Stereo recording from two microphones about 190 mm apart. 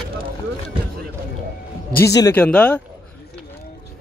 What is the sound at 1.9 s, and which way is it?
Speech, 20° left (ahead or behind).